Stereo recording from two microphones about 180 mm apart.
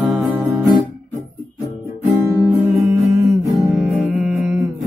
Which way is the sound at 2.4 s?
15° right (ahead or behind).